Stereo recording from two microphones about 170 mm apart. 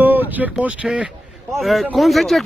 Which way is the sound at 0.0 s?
10° right (ahead or behind).